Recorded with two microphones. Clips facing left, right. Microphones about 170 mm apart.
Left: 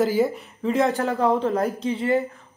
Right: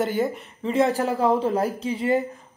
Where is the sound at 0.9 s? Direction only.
35° right (ahead or behind).